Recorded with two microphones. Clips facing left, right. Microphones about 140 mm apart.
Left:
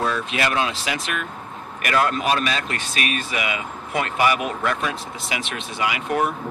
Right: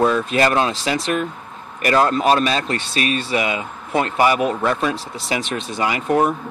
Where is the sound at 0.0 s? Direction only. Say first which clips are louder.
Right 7 dB; 45° right (ahead or behind).